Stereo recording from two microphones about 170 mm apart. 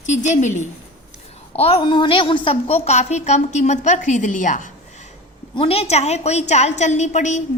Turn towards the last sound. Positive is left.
turn(degrees=45)  # may be behind; listen again after turning